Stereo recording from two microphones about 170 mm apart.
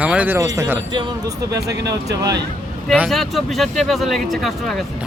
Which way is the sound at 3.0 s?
Centre (ahead or behind).